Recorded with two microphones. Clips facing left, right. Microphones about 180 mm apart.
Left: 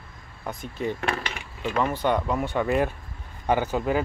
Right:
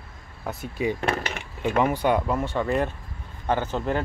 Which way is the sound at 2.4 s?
10° left (ahead or behind).